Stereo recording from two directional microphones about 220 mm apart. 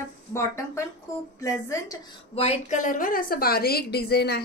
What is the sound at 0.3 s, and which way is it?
A woman's voice, 10° left (ahead or behind).